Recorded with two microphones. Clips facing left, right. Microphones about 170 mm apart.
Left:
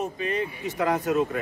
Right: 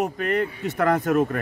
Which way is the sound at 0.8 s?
60° right (ahead or behind).